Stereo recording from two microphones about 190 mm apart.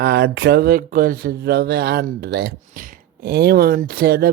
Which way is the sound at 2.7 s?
45° right (ahead or behind).